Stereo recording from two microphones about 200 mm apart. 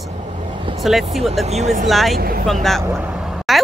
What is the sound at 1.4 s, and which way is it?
Speech, 35° right (ahead or behind).